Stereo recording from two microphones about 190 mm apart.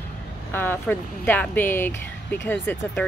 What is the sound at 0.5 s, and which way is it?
Speech, 10° left (ahead or behind).